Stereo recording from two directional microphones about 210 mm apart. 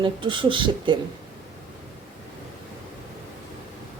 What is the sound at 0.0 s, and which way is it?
Speech, 25° right (ahead or behind).